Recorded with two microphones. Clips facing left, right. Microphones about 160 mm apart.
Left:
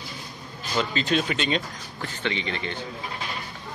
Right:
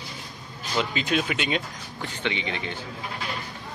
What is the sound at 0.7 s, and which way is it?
Speech, 10° right (ahead or behind).